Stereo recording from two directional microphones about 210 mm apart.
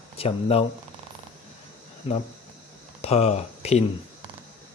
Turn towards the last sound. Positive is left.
turn(degrees=30)  # may be behind; listen again after turning